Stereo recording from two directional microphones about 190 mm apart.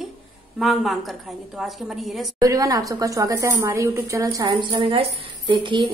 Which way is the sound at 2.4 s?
20° right (ahead or behind).